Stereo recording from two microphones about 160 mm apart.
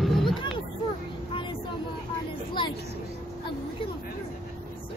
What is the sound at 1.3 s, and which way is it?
Vehicle, 35° left (ahead or behind).